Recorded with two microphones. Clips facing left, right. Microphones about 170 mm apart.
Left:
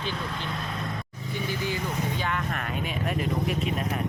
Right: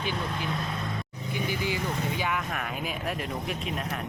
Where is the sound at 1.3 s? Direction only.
15° right (ahead or behind).